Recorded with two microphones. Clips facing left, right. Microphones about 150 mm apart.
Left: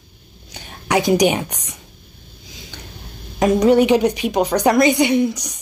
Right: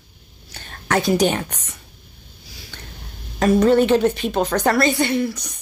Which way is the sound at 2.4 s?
20° left (ahead or behind).